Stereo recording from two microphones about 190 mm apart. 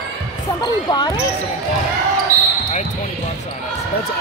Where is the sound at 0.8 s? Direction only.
20° left (ahead or behind).